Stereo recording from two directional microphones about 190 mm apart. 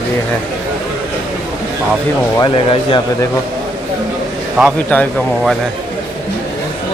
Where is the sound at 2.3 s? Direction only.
25° left (ahead or behind).